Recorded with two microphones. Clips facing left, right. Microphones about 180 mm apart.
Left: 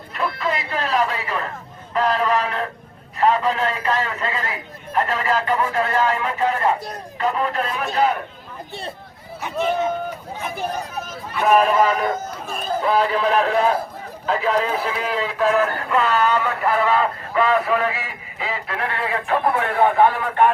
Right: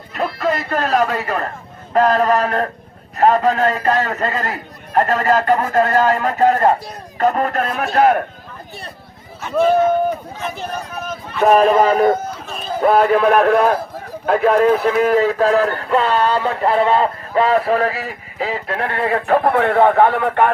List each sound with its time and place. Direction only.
0.3 s a man's voice: 45° right (ahead or behind)
10.4 s speech: 10° left (ahead or behind)
11.4 s a man's voice: 35° right (ahead or behind)
12.8 s a man's voice: 55° right (ahead or behind)
18.9 s a man's voice: 50° right (ahead or behind)